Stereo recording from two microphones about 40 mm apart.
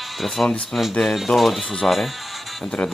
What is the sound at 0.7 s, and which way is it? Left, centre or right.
Speech, left.